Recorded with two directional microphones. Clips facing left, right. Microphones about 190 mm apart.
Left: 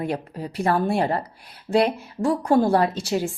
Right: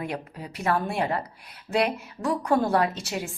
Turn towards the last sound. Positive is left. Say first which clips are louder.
# left 4 dB
turn(degrees=30)  # may be behind; listen again after turning